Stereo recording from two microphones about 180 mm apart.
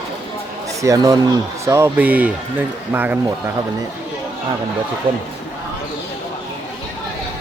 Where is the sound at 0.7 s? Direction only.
20° right (ahead or behind).